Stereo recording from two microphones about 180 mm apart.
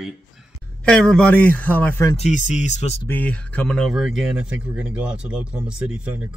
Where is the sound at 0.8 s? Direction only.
5° left (ahead or behind).